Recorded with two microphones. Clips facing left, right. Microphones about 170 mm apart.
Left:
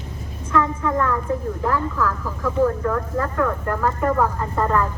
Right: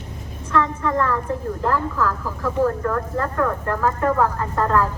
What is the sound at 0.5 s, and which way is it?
Speech, 10° left (ahead or behind).